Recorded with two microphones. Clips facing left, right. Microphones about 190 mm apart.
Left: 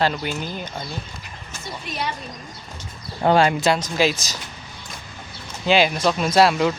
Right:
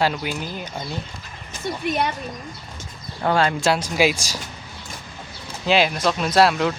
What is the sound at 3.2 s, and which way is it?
Speech, 20° left (ahead or behind).